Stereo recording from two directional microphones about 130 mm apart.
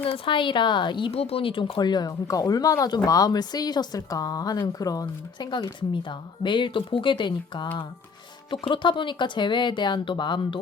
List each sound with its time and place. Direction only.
0.0 s speech: 40° left (ahead or behind)